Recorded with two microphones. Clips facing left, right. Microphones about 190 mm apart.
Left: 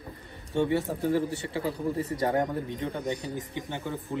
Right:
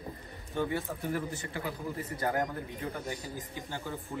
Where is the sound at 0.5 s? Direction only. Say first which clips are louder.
Left 6 dB; 30° left (ahead or behind).